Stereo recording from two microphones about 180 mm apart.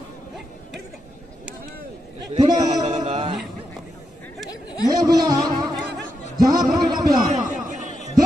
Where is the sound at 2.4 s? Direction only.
20° right (ahead or behind).